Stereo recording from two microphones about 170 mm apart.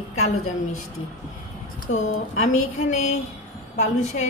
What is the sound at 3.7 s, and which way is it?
Speech, 45° left (ahead or behind).